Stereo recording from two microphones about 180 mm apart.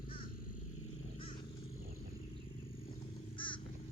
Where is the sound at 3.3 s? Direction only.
30° left (ahead or behind).